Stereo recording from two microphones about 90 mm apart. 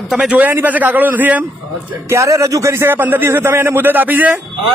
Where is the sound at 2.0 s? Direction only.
35° right (ahead or behind); by 4.3 s 20° right (ahead or behind).